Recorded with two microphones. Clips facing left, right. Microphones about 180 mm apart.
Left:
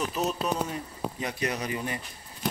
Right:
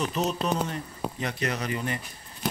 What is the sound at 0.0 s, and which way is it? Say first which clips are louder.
Speech: right 1 dB; 5° left (ahead or behind).